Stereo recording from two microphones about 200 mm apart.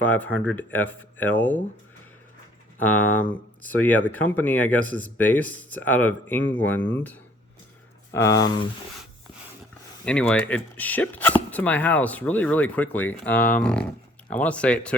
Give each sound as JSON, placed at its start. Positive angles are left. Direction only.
{"t": 0.0, "sound": "speech", "side_deg": 10}
{"t": 2.8, "sound": "speech", "side_deg": 10}
{"t": 8.1, "sound": "speech", "side_deg": 15}
{"t": 10.1, "sound": "speech", "side_deg": 5}